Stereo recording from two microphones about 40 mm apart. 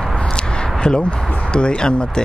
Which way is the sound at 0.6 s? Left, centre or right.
Left.